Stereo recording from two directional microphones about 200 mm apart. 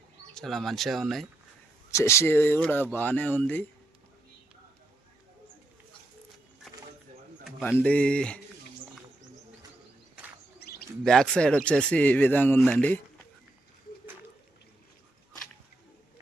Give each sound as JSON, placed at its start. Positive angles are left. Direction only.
{"t": 0.3, "sound": "speech", "side_deg": 0}
{"t": 1.9, "sound": "speech", "side_deg": 15}
{"t": 7.8, "sound": "speech", "side_deg": 5}
{"t": 10.6, "sound": "bird", "side_deg": 50}
{"t": 11.0, "sound": "speech", "side_deg": 0}